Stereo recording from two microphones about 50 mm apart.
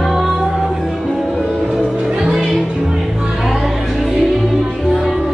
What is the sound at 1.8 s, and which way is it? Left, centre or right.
Music, right.